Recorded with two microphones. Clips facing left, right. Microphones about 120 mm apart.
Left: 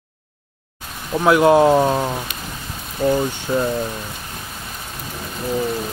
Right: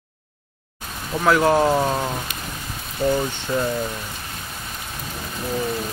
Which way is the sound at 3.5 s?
20° left (ahead or behind).